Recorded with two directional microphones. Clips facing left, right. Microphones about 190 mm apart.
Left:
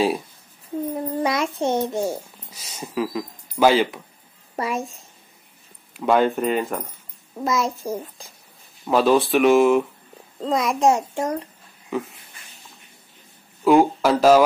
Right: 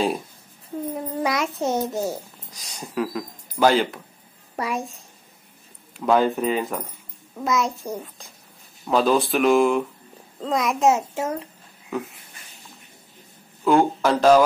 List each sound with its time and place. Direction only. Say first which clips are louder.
0.9 s a child's voice: left 1 dB; centre (ahead or behind)
13.7 s speech: left 2 dB; 5° left (ahead or behind)